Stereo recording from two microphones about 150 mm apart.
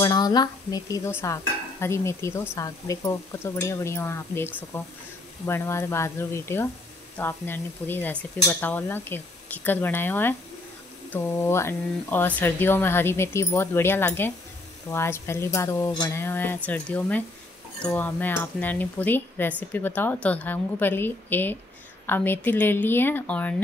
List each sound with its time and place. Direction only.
0.0 s speech: 25° left (ahead or behind)
1.2 s stir: 20° left (ahead or behind)
2.5 s speech: 20° left (ahead or behind)